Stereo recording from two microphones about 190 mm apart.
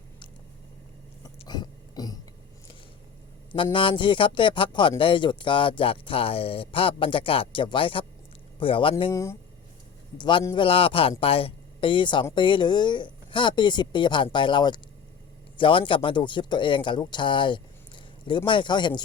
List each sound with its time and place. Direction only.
1.4 s burping: 20° left (ahead or behind)
3.5 s speech: 25° left (ahead or behind)
9.1 s speech: 15° left (ahead or behind)